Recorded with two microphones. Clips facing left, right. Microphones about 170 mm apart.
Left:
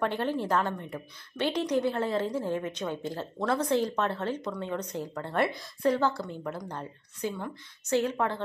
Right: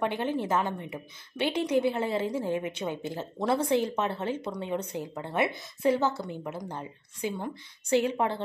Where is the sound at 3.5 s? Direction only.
25° right (ahead or behind).